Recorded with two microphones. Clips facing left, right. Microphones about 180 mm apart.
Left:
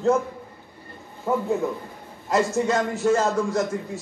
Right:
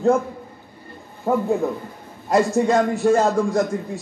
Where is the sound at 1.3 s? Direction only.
35° right (ahead or behind).